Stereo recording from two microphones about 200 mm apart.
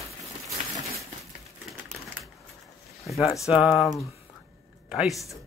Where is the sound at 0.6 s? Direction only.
35° right (ahead or behind).